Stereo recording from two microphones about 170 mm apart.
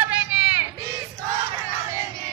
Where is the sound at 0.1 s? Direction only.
10° right (ahead or behind).